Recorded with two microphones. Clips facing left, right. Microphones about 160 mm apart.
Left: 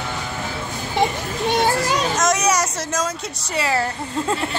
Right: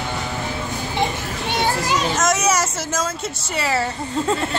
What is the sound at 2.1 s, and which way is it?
Speech, 5° right (ahead or behind).